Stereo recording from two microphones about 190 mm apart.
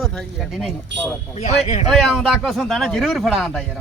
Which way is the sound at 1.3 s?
35° left (ahead or behind).